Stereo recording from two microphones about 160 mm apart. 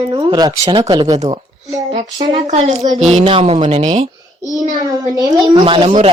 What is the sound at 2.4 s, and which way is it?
A woman's voice, 45° right (ahead or behind).